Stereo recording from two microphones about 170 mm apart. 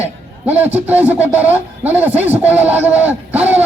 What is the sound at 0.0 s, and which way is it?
A man's voice, 10° right (ahead or behind).